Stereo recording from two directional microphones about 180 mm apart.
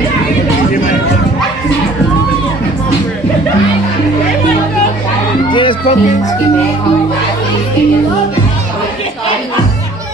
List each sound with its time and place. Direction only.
5.5 s music: 30° left (ahead or behind)